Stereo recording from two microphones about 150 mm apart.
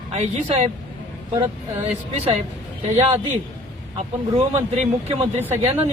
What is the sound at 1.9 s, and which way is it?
A man's voice, 45° right (ahead or behind).